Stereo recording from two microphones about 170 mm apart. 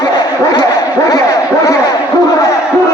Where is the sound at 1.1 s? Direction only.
20° left (ahead or behind).